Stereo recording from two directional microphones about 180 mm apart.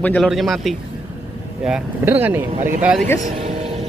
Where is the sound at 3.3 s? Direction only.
35° right (ahead or behind).